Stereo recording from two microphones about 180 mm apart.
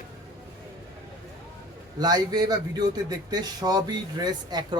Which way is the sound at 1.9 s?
20° right (ahead or behind).